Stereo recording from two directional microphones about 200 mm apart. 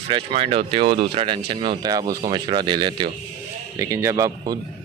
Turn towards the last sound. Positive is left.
turn(degrees=-15)  # may be behind; listen again after turning